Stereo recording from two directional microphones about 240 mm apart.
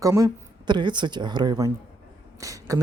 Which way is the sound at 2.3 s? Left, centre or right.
Centre.